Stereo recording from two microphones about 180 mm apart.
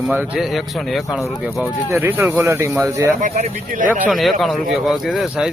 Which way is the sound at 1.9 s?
10° right (ahead or behind).